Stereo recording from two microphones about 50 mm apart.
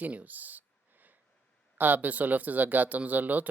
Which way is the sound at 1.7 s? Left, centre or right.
Right.